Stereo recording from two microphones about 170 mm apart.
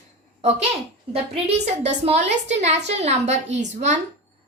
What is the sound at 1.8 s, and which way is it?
A woman's voice, 40° right (ahead or behind).